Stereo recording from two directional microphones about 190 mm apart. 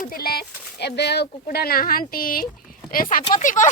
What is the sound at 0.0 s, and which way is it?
Speech, 50° left (ahead or behind).